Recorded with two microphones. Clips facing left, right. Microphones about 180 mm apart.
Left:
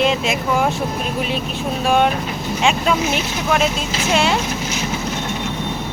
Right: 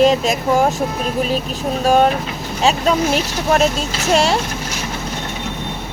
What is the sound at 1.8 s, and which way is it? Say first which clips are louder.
Speech: right 3 dB; 40° right (ahead or behind).